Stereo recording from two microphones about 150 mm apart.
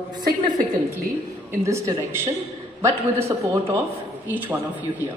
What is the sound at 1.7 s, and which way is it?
A woman's voice, 20° right (ahead or behind).